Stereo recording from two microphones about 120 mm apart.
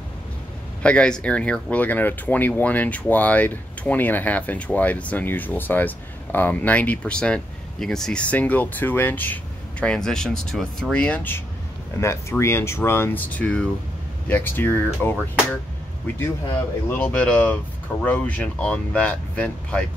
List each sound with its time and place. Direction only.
0.8 s speech: 10° left (ahead or behind)
16.9 s speech: 10° left (ahead or behind)